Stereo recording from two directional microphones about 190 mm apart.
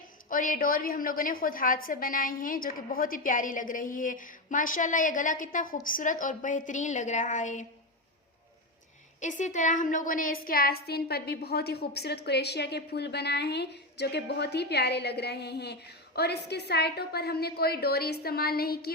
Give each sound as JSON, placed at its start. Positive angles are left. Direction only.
{"t": 0.3, "sound": "a woman's voice", "side_deg": 45}
{"t": 9.2, "sound": "a woman's voice", "side_deg": 40}